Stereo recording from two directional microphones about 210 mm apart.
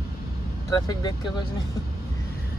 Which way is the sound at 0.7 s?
20° left (ahead or behind).